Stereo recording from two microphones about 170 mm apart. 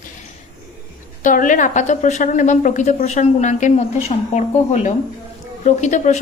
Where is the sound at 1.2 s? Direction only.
50° left (ahead or behind).